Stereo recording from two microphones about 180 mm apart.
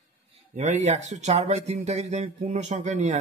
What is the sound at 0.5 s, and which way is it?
Speech, 40° right (ahead or behind).